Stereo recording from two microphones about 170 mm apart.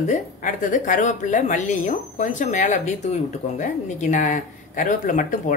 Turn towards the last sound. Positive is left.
turn(degrees=50)  # may be behind; listen again after turning